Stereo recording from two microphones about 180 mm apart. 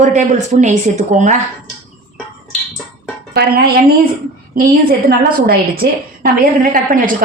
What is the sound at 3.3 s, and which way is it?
A woman's voice, 60° right (ahead or behind).